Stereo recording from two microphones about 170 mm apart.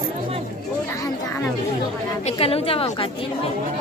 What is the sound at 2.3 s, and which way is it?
Speech, 35° left (ahead or behind).